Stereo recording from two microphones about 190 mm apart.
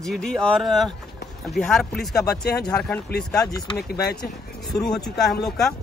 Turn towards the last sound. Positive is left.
turn(degrees=0)  # may be behind; listen again after turning